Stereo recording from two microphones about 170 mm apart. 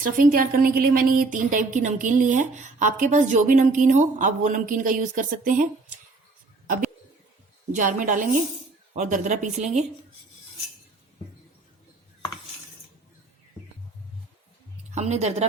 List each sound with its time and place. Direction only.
0.0 s a woman's voice: 55° right (ahead or behind)
7.7 s a woman's voice: 50° right (ahead or behind)
14.8 s speech: 40° right (ahead or behind)